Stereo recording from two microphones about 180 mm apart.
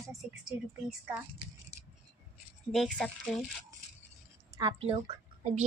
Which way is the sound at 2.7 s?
Centre (ahead or behind).